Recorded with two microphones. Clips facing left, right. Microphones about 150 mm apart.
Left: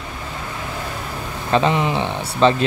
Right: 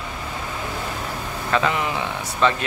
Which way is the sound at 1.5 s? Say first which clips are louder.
Left 5 dB; 25° left (ahead or behind).